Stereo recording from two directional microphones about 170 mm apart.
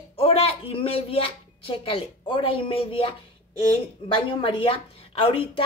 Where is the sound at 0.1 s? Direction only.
35° left (ahead or behind).